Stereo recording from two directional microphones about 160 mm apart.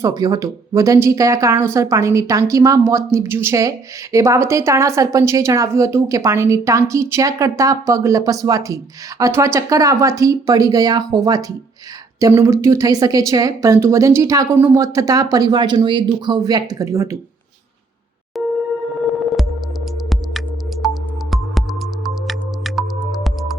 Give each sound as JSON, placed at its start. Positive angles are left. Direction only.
{"t": 0.0, "sound": "speech", "side_deg": -20}
{"t": 18.3, "sound": "a sound", "side_deg": 0}
{"t": 20.8, "sound": "music", "side_deg": 0}